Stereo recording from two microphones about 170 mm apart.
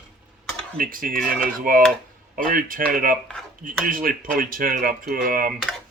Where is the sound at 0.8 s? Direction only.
55° right (ahead or behind).